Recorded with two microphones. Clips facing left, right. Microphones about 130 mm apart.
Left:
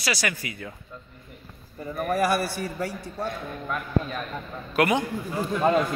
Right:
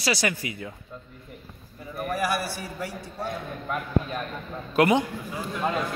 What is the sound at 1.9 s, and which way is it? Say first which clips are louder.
Speech: left 4 dB; 35° left (ahead or behind).